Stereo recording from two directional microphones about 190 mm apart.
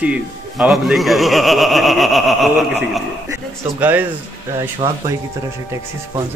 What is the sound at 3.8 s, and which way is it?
Speech, 10° right (ahead or behind).